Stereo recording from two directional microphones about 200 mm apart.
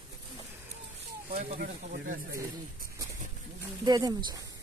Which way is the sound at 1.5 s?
50° right (ahead or behind).